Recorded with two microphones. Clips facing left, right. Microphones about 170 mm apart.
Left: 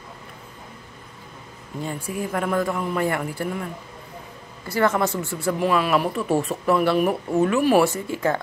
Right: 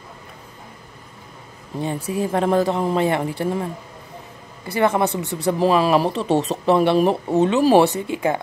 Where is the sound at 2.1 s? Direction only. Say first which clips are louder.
Right 5 dB; 25° right (ahead or behind).